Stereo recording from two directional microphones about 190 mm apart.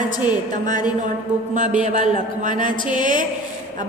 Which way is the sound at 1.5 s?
40° right (ahead or behind).